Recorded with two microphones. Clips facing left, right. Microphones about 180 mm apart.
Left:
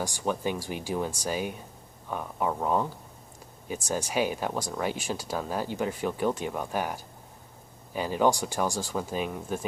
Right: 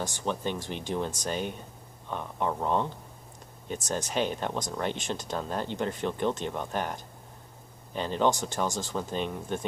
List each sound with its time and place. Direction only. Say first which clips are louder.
0.0 s speech: left 2 dB; 10° left (ahead or behind)